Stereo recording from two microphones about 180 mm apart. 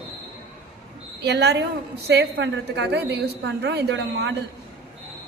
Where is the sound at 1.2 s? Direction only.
70° right (ahead or behind).